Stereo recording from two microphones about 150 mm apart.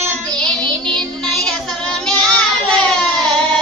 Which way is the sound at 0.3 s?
5° left (ahead or behind).